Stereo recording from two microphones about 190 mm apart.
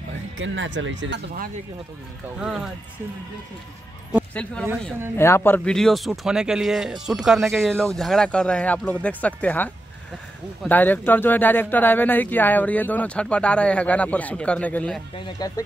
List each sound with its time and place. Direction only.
0.4 s speech: 75° right (ahead or behind)
2.3 s speech: 5° right (ahead or behind)
4.3 s speech: 5° left (ahead or behind)
15.1 s speech: 25° left (ahead or behind)